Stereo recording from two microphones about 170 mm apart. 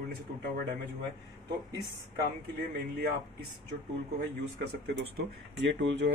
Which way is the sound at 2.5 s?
70° right (ahead or behind).